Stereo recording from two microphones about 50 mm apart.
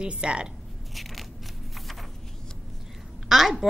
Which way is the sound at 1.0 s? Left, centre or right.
Centre.